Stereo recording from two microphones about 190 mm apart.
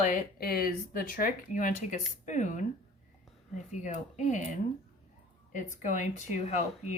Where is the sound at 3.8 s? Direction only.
40° left (ahead or behind).